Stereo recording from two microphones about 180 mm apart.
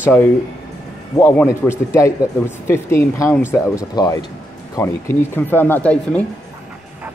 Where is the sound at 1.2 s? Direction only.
15° left (ahead or behind).